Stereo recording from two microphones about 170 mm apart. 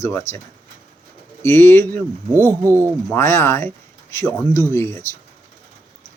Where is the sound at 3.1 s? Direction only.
15° left (ahead or behind).